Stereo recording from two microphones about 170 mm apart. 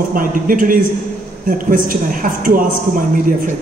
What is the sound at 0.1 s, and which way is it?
Speech, 55° right (ahead or behind).